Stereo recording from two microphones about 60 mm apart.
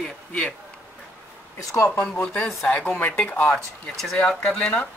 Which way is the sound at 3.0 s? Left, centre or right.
Left.